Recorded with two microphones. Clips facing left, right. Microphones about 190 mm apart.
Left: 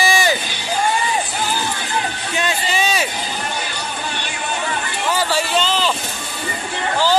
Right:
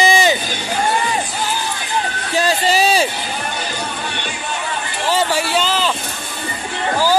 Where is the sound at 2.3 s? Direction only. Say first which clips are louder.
Right 7 dB; 35° right (ahead or behind).